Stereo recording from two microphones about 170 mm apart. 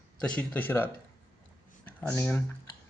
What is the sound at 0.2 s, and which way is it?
Speech, 5° left (ahead or behind).